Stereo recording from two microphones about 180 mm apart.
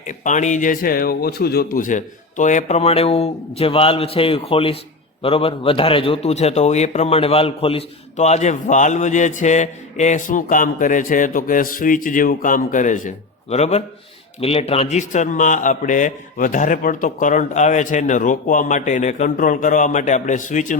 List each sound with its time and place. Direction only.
0.1 s a man's voice: 45° left (ahead or behind)